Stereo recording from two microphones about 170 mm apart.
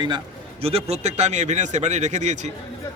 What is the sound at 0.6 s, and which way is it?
Speech, 35° right (ahead or behind).